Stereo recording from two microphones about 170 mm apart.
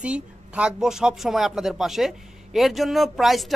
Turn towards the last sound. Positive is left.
turn(degrees=0)  # may be behind; listen again after turning